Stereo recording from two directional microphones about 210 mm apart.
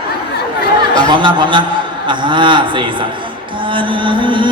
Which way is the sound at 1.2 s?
20° right (ahead or behind).